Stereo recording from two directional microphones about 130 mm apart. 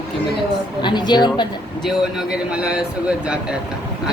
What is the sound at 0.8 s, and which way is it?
Speech, 35° left (ahead or behind).